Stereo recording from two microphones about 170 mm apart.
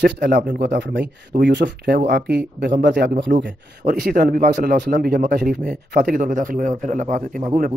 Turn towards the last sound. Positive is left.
turn(degrees=-50)  # may be behind; listen again after turning